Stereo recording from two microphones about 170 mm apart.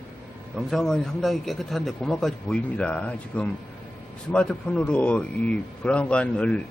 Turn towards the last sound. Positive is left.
turn(degrees=5)  # may be behind; listen again after turning